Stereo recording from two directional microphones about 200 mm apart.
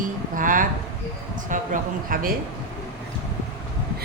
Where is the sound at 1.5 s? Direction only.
45° right (ahead or behind).